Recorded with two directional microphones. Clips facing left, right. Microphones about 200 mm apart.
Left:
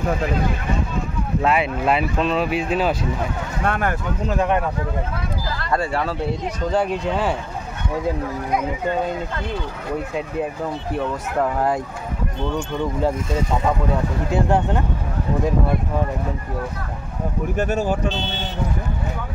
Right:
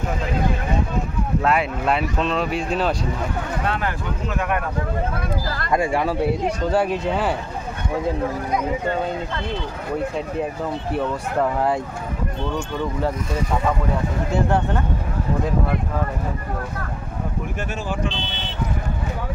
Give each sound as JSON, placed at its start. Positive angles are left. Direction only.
{"t": 1.4, "sound": "speech", "side_deg": 0}
{"t": 3.6, "sound": "speech", "side_deg": 50}
{"t": 4.3, "sound": "speech", "side_deg": 30}
{"t": 5.7, "sound": "speech", "side_deg": -15}
{"t": 14.3, "sound": "speech", "side_deg": 15}
{"t": 17.6, "sound": "speech", "side_deg": 40}